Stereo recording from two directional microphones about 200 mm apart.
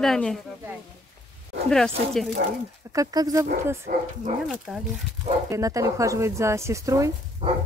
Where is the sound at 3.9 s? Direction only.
45° right (ahead or behind).